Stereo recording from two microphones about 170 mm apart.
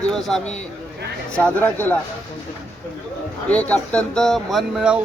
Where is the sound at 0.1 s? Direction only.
Centre (ahead or behind).